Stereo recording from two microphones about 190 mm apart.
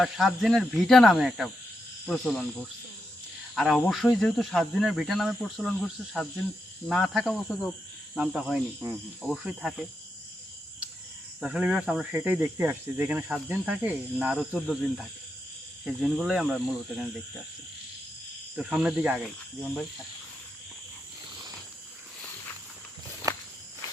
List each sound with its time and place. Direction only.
0.0 s speech: centre (ahead or behind)
3.5 s speech: centre (ahead or behind)
11.3 s speech: 5° right (ahead or behind)
18.5 s speech: 5° right (ahead or behind)
23.3 s walk: 20° right (ahead or behind)